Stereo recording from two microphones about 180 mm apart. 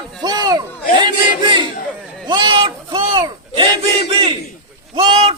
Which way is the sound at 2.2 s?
25° right (ahead or behind).